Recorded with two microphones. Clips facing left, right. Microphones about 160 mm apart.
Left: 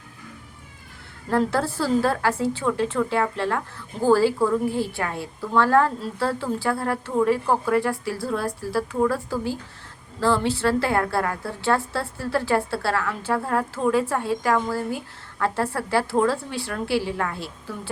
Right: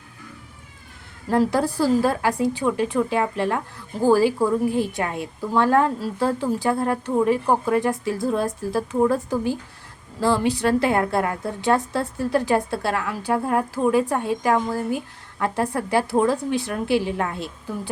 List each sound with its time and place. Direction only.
1.3 s a woman's voice: 15° right (ahead or behind)